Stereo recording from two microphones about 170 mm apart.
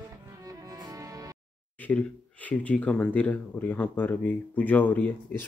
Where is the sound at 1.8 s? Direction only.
10° left (ahead or behind).